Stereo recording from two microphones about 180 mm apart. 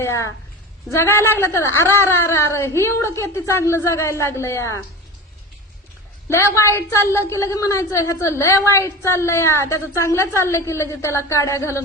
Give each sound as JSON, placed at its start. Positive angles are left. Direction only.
{"t": 0.0, "sound": "a woman's voice", "side_deg": 15}
{"t": 6.2, "sound": "a woman's voice", "side_deg": 15}